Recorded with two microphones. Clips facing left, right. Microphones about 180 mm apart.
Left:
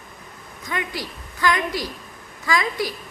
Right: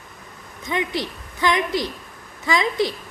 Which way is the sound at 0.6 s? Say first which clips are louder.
Right 4 dB; 20° right (ahead or behind).